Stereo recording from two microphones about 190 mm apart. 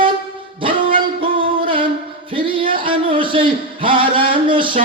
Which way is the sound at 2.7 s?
25° right (ahead or behind).